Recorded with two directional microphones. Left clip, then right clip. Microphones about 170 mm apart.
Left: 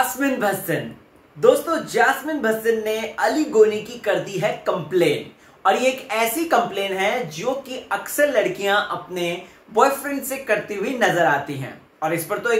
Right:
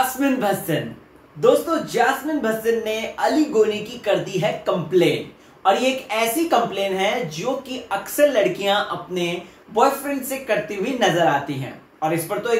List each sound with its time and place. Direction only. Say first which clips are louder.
0.2 s speech: right 1 dB; 5° left (ahead or behind)